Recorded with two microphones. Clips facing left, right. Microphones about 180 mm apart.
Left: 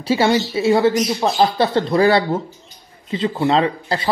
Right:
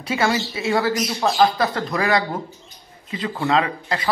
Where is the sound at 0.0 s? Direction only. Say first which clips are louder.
Left 5 dB; 30° left (ahead or behind).